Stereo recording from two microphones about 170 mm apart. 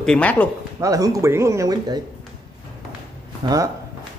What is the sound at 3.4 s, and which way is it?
Speech, 20° right (ahead or behind).